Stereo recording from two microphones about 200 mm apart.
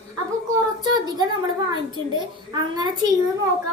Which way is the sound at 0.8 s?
20° right (ahead or behind).